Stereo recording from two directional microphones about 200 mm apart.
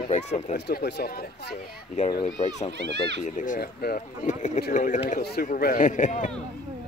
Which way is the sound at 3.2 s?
40° left (ahead or behind).